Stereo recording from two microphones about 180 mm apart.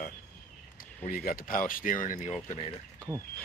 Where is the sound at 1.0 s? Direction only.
55° left (ahead or behind); by 2.8 s 35° left (ahead or behind).